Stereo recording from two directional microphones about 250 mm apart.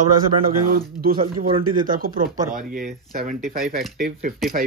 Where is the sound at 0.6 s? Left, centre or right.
Right.